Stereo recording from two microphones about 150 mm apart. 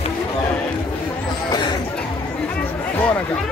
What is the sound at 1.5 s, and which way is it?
Speech, 30° left (ahead or behind).